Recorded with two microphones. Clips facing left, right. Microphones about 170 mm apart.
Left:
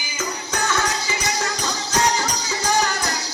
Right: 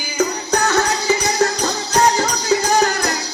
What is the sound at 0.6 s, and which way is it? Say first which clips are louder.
Music: right 6 dB; 60° right (ahead or behind).